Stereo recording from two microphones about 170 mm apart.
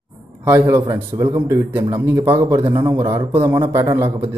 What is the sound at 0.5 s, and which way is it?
A man's voice, 15° right (ahead or behind).